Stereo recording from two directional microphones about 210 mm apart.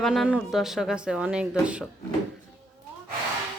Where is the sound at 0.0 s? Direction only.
Centre (ahead or behind).